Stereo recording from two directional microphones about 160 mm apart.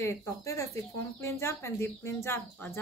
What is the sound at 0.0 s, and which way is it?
Speech, 15° left (ahead or behind).